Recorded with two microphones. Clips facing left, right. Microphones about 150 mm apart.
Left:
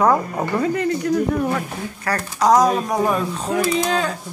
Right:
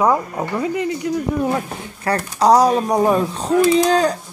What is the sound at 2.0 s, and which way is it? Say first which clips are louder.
Speech: right 3 dB; 30° right (ahead or behind).